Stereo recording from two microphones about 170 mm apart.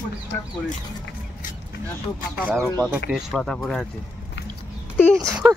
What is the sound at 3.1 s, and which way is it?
Speech, centre (ahead or behind).